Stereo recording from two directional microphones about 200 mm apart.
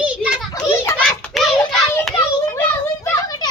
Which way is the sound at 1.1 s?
Centre (ahead or behind).